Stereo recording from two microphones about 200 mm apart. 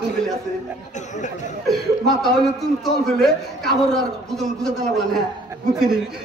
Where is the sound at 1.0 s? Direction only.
35° left (ahead or behind).